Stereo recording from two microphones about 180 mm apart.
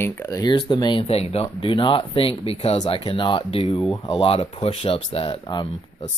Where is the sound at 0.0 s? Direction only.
15° left (ahead or behind).